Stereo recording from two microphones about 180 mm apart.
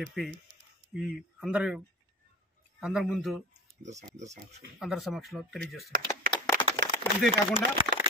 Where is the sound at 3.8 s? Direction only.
40° right (ahead or behind).